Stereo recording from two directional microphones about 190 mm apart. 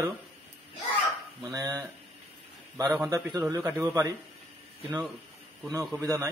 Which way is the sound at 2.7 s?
15° right (ahead or behind).